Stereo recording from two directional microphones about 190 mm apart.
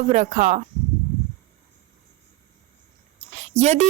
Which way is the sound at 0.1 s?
40° right (ahead or behind).